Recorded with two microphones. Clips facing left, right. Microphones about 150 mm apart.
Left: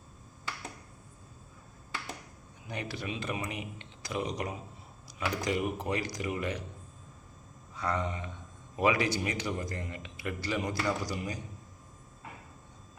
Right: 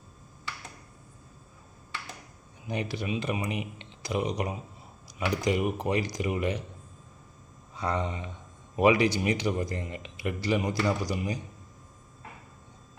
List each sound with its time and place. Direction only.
2.6 s a man's voice: 15° right (ahead or behind)
7.8 s a man's voice: 20° right (ahead or behind)